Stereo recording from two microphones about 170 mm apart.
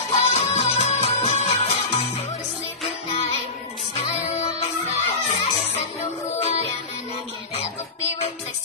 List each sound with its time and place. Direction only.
0.1 s music: 35° left (ahead or behind)
4.6 s music: 40° left (ahead or behind)